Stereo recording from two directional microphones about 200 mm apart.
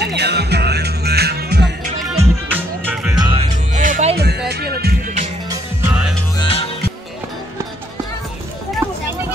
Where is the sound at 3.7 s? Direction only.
40° right (ahead or behind).